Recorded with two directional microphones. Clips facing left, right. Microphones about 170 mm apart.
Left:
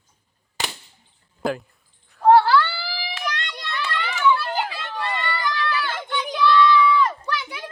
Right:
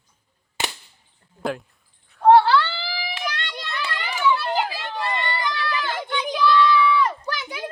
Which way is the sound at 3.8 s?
15° right (ahead or behind).